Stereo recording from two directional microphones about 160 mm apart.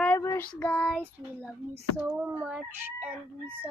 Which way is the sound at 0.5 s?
10° left (ahead or behind).